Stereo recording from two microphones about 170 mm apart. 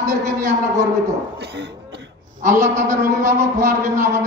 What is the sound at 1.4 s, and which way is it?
Speech, 85° right.